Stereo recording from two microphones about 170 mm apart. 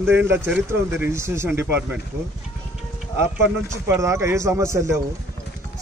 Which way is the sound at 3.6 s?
15° right (ahead or behind).